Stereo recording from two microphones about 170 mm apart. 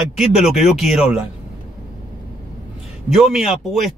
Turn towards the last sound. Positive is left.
turn(degrees=0)  # may be behind; listen again after turning